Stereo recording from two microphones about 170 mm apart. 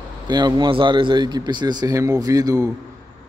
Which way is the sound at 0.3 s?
25° right (ahead or behind).